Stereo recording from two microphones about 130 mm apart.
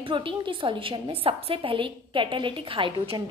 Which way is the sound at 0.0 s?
40° right (ahead or behind).